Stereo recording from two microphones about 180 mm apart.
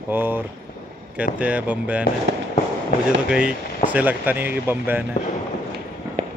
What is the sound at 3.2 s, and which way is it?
Speech, 5° right (ahead or behind).